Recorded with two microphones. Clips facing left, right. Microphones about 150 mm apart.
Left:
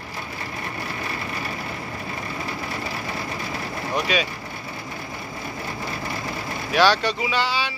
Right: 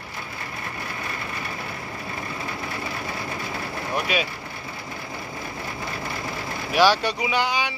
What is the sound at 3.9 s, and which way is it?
Speech, 10° right (ahead or behind).